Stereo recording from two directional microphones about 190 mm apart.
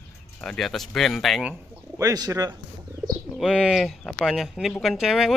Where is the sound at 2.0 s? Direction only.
15° right (ahead or behind).